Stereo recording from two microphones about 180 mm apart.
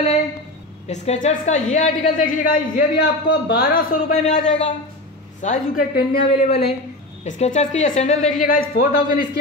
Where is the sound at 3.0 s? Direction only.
70° left (ahead or behind).